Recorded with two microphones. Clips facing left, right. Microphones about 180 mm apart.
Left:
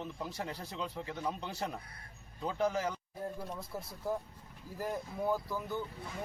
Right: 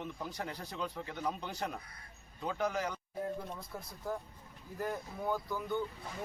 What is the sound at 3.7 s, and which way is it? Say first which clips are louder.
Speech: left 3 dB; 5° left (ahead or behind).